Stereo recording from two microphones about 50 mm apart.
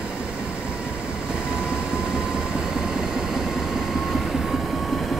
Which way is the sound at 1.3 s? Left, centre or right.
Centre.